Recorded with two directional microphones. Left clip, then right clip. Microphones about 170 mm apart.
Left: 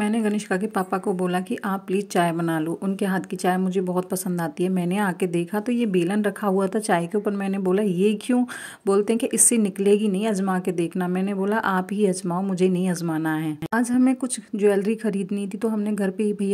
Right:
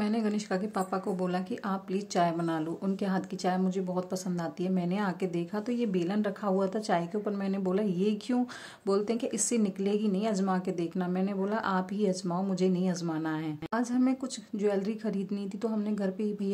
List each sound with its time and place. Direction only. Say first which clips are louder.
0.0 s a woman's voice: left 7 dB; 25° left (ahead or behind)